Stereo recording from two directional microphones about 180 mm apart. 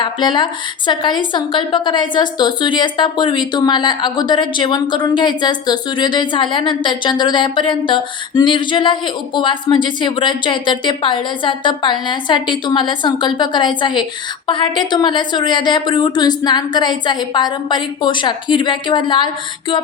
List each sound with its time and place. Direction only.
0.0 s a woman's voice: 25° left (ahead or behind)